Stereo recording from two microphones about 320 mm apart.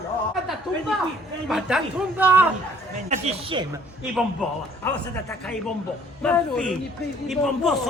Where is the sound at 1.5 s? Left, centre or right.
Centre.